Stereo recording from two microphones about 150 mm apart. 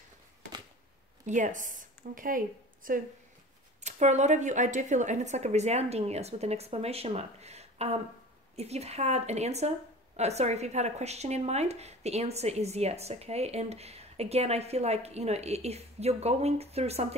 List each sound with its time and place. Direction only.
1.2 s speech: 55° right (ahead or behind)
3.8 s speech: 50° right (ahead or behind)